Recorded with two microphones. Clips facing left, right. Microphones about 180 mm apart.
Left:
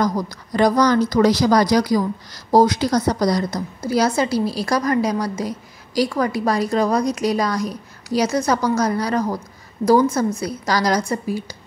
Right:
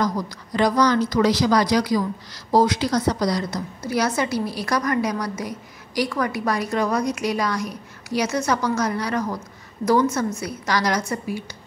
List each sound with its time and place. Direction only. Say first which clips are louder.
0.0 s a woman's voice: left 3 dB; 40° left (ahead or behind)